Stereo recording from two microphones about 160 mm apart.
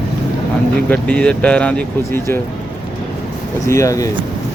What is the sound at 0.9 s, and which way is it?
Speech, 5° left (ahead or behind).